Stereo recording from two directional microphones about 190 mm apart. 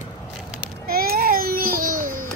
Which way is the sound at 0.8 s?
50° right (ahead or behind).